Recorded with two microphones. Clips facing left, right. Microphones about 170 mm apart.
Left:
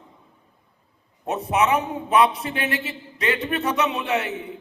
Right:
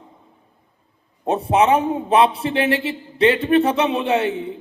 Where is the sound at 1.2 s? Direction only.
30° right (ahead or behind).